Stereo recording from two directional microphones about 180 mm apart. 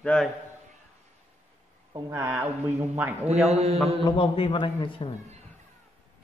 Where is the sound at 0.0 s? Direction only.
5° left (ahead or behind).